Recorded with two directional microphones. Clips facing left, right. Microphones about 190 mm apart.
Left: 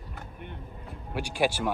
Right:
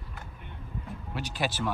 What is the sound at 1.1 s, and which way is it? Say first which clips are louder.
Speech: left 6 dB; 10° left (ahead or behind).